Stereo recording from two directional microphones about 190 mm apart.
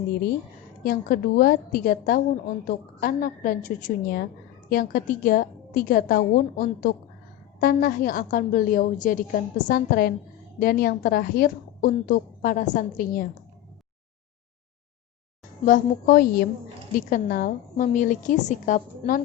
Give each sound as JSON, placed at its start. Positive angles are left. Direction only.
{"t": 0.8, "sound": "a woman's voice", "side_deg": 50}
{"t": 15.6, "sound": "a woman's voice", "side_deg": 45}